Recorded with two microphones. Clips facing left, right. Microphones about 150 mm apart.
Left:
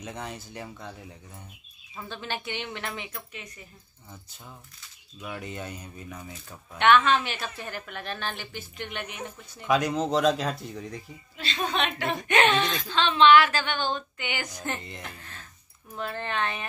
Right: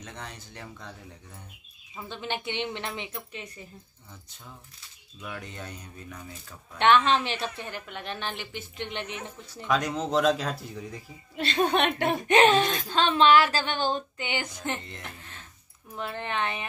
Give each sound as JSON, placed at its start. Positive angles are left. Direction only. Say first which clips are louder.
{"t": 0.0, "sound": "speech", "louder": "left 5 dB", "side_deg": 5}
{"t": 2.0, "sound": "speech", "louder": "right 1 dB", "side_deg": -20}
{"t": 5.2, "sound": "speech", "louder": "left 3 dB", "side_deg": 5}
{"t": 6.8, "sound": "speech", "louder": "left 1 dB", "side_deg": -30}
{"t": 9.7, "sound": "speech", "louder": "left 3 dB", "side_deg": 0}
{"t": 11.3, "sound": "a woman's voice", "louder": "right 5 dB", "side_deg": -55}
{"t": 12.3, "sound": "speech", "louder": "right 3 dB", "side_deg": -35}
{"t": 16.0, "sound": "speech", "louder": "left 1 dB", "side_deg": -15}